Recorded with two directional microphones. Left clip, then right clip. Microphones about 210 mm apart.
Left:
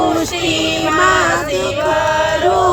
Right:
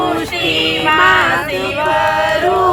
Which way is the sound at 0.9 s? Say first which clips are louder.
Right 2 dB; 50° left (ahead or behind).